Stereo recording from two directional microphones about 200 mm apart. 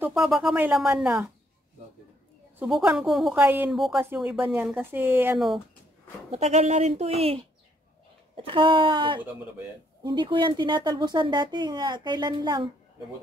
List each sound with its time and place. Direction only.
0.0 s speech: centre (ahead or behind)
2.6 s speech: 5° right (ahead or behind)
6.3 s speech: 35° right (ahead or behind)